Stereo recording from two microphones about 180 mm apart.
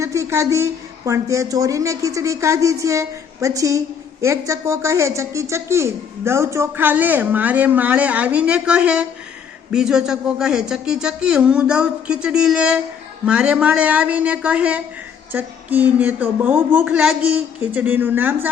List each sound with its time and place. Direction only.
0.0 s speech: 15° right (ahead or behind)